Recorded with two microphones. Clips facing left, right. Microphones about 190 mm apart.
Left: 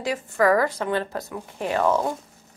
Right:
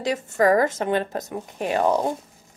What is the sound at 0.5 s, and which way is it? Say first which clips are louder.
Speech: right 2 dB; 20° right (ahead or behind).